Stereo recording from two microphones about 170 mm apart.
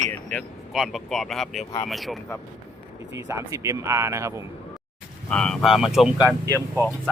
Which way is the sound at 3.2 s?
15° right (ahead or behind).